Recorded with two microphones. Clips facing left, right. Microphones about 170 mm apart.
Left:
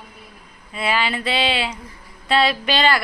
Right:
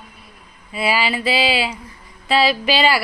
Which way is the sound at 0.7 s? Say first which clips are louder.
Right 2 dB; 5° right (ahead or behind).